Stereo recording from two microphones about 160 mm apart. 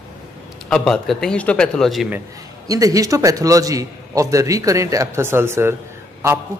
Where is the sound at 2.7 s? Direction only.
20° right (ahead or behind).